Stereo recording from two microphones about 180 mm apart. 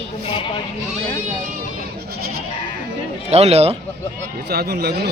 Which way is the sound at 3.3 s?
35° right (ahead or behind).